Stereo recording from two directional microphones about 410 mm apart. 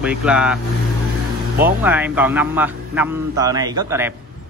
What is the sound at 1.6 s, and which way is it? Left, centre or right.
A man's voice, centre.